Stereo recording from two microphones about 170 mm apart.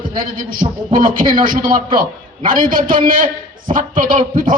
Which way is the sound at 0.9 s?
55° right (ahead or behind).